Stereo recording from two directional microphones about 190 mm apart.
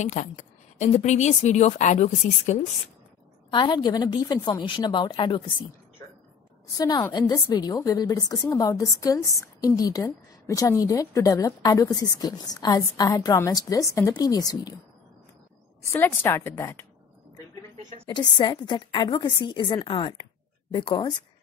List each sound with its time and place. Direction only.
0.0 s speech: 40° left (ahead or behind)
3.4 s a woman's voice: 25° left (ahead or behind)
6.8 s a woman's voice: 20° left (ahead or behind)
15.8 s a woman's voice: 10° left (ahead or behind)
18.0 s a woman's voice: 25° left (ahead or behind)